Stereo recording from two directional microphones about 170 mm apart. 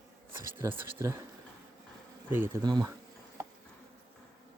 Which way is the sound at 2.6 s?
25° right (ahead or behind).